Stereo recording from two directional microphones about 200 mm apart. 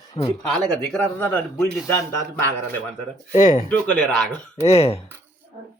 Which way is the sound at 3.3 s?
35° left (ahead or behind).